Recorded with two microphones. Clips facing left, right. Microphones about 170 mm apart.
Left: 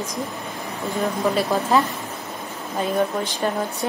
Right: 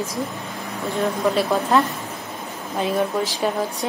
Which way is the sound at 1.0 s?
Centre (ahead or behind).